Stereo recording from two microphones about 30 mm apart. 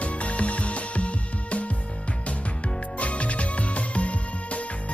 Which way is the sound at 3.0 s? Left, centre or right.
Left.